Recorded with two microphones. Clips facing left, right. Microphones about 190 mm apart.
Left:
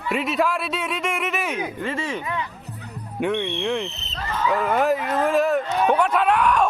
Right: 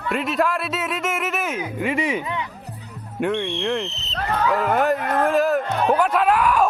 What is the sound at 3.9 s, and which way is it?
Speech, 60° left (ahead or behind).